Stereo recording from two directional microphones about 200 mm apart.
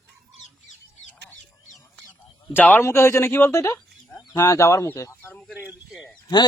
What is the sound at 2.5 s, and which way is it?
Speech, 10° left (ahead or behind).